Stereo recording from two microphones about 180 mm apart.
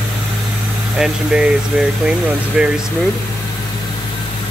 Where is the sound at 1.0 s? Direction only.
5° right (ahead or behind).